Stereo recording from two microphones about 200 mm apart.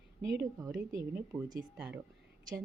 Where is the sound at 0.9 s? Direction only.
15° right (ahead or behind).